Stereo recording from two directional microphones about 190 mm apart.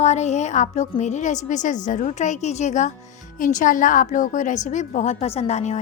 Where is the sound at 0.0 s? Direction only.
35° left (ahead or behind).